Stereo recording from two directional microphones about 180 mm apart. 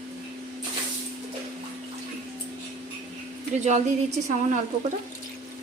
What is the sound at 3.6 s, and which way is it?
Speech, 40° right (ahead or behind).